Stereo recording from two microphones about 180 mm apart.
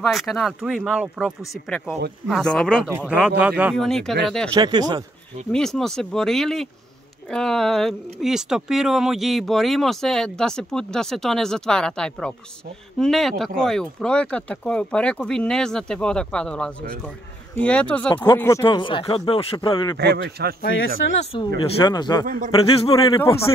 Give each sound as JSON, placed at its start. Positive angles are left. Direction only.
{"t": 0.0, "sound": "speech", "side_deg": 0}
{"t": 3.1, "sound": "speech", "side_deg": -5}
{"t": 3.7, "sound": "speech", "side_deg": 5}
{"t": 4.6, "sound": "speech", "side_deg": -20}
{"t": 5.5, "sound": "speech", "side_deg": 5}
{"t": 18.1, "sound": "speech", "side_deg": 25}
{"t": 20.0, "sound": "a man's voice", "side_deg": -65}
{"t": 21.2, "sound": "speech", "side_deg": 30}
{"t": 22.2, "sound": "speech", "side_deg": -45}
{"t": 22.5, "sound": "speech", "side_deg": 20}